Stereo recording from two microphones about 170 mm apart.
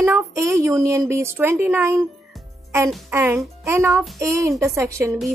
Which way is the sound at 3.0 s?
15° right (ahead or behind).